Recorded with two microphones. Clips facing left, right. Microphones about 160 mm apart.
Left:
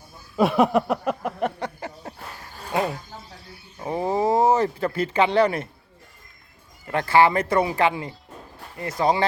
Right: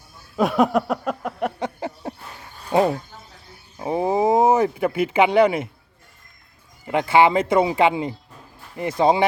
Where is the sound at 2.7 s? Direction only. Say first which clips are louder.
Right 6 dB; 30° right (ahead or behind).